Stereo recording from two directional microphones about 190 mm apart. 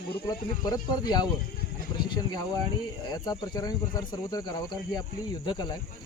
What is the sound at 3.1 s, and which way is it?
Speech, 20° left (ahead or behind).